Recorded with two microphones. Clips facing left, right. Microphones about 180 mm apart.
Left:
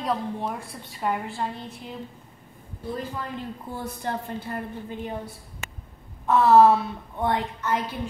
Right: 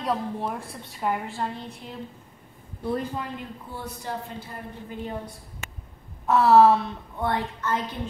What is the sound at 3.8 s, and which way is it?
Speech, 55° left (ahead or behind).